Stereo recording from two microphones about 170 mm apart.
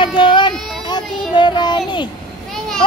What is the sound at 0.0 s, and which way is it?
Child singing, 30° left (ahead or behind).